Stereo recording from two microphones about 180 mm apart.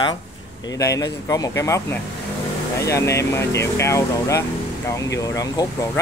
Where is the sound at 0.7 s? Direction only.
20° left (ahead or behind).